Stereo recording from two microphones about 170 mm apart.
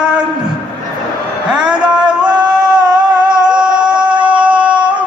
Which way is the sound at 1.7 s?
5° right (ahead or behind).